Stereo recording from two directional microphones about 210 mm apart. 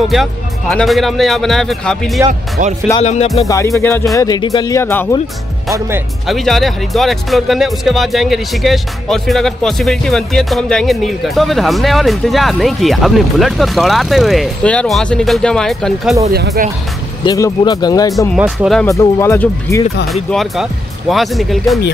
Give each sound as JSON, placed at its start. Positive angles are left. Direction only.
{"t": 0.1, "sound": "speech", "side_deg": 0}
{"t": 3.0, "sound": "music", "side_deg": 30}
{"t": 3.4, "sound": "speech", "side_deg": 15}
{"t": 6.2, "sound": "speech", "side_deg": 0}
{"t": 16.3, "sound": "speech", "side_deg": -45}
{"t": 17.2, "sound": "speech", "side_deg": 20}
{"t": 18.4, "sound": "speech", "side_deg": 0}
{"t": 18.9, "sound": "speech", "side_deg": 15}
{"t": 20.2, "sound": "speech", "side_deg": 0}